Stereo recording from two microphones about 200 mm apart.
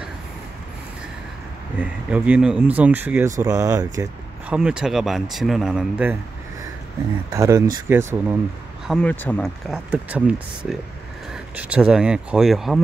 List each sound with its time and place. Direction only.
1.8 s speech: 5° right (ahead or behind)
4.6 s speech: 5° right (ahead or behind)
7.3 s speech: 15° right (ahead or behind)
8.8 s speech: 5° left (ahead or behind)